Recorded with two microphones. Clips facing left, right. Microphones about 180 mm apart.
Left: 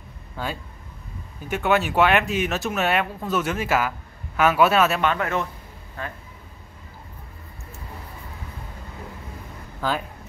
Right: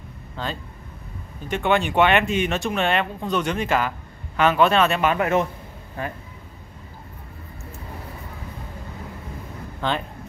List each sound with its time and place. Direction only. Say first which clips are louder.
0.4 s speech: even; 10° left (ahead or behind)
5.0 s a man's voice: right 3 dB; 15° right (ahead or behind)
9.8 s speech: even; 5° left (ahead or behind)